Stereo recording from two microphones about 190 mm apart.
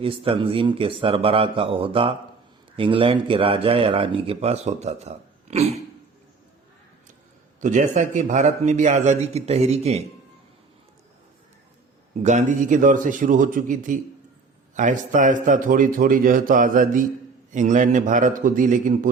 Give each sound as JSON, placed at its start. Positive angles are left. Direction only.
{"t": 0.0, "sound": "speech", "side_deg": -30}
{"t": 7.6, "sound": "a man's voice", "side_deg": -40}
{"t": 12.2, "sound": "a man's voice", "side_deg": -40}